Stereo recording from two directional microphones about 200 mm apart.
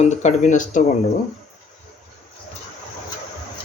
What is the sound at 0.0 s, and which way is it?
Speech, 35° left (ahead or behind).